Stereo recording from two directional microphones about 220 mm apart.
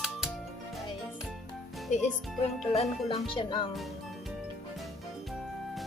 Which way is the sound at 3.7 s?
Centre (ahead or behind).